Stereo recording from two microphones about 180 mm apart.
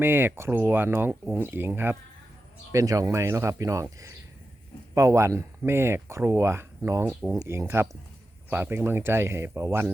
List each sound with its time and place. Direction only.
0.0 s speech: 10° right (ahead or behind)